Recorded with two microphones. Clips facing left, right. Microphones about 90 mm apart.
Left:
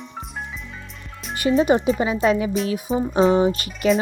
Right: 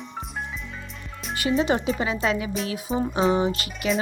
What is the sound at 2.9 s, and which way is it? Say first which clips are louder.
Speech: left 2 dB; centre (ahead or behind).